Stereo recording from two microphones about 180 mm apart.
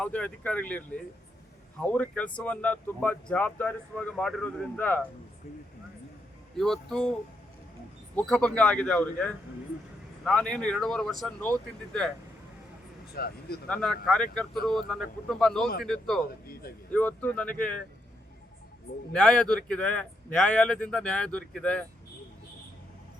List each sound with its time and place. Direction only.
0.0 s speech: 5° left (ahead or behind)
6.6 s speech: 5° left (ahead or behind)
8.1 s speech: 5° left (ahead or behind)
13.1 s speech: 60° left (ahead or behind)
13.7 s speech: 5° left (ahead or behind)
19.1 s speech: 5° left (ahead or behind)